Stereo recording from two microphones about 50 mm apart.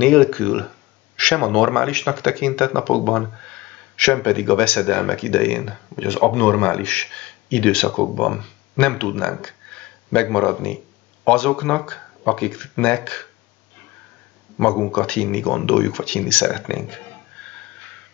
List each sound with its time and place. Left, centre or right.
0.0 s speech: centre
14.6 s speech: left